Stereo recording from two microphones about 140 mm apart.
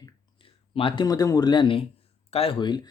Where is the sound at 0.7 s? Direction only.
35° left (ahead or behind).